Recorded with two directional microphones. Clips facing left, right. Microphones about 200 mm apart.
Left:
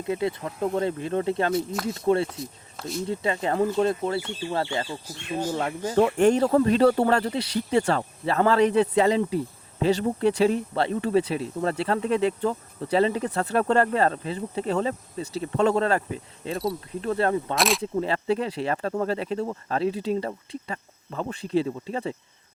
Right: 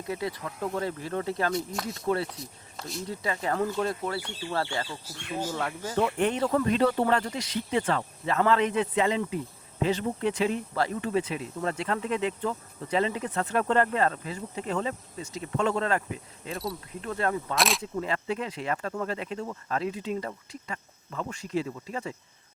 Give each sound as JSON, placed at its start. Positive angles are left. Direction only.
{"t": 0.1, "sound": "speech", "side_deg": 25}
{"t": 2.7, "sound": "speech", "side_deg": 0}
{"t": 3.1, "sound": "speech", "side_deg": 25}
{"t": 6.0, "sound": "speech", "side_deg": 45}
{"t": 17.5, "sound": "speech", "side_deg": 0}
{"t": 17.9, "sound": "speech", "side_deg": 30}